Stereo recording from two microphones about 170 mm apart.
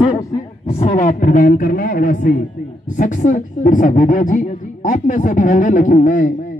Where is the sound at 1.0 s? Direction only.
50° left (ahead or behind).